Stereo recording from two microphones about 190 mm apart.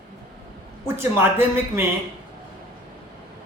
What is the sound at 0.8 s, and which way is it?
Speech, 15° right (ahead or behind).